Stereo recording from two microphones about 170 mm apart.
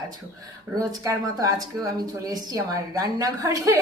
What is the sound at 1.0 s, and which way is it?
A woman's voice, 20° right (ahead or behind).